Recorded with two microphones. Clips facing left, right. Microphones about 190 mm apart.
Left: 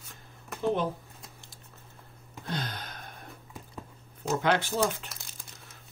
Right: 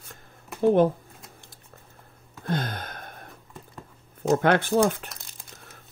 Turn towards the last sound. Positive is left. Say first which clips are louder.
# right 7 dB
turn(degrees=-55)  # may be behind; listen again after turning